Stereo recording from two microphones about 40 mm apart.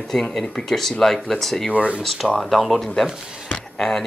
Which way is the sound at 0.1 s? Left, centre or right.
Centre.